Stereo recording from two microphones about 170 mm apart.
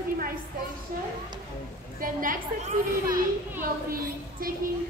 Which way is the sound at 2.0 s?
55° right (ahead or behind).